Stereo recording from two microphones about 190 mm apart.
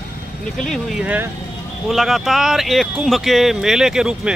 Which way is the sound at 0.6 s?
5° left (ahead or behind).